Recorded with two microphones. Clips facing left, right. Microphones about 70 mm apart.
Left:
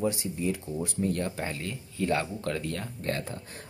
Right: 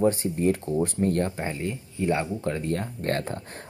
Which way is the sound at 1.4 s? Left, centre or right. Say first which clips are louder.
Right 4 dB; right.